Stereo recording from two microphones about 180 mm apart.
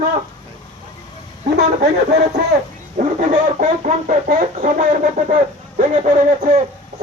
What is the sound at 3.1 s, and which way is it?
Speech, 40° right (ahead or behind).